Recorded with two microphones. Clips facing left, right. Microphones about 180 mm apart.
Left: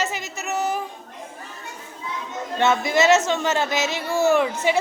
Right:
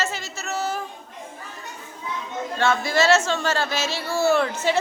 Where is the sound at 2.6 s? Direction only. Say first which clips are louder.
Left 2 dB; 20° left (ahead or behind).